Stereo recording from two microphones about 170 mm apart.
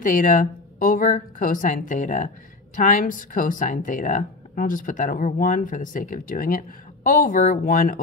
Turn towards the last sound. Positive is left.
turn(degrees=55)  # may be behind; listen again after turning